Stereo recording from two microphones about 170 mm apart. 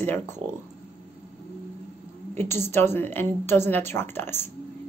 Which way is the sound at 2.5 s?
15° left (ahead or behind).